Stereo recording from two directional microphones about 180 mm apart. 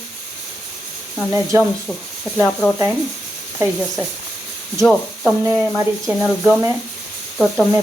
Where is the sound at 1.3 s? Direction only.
15° right (ahead or behind).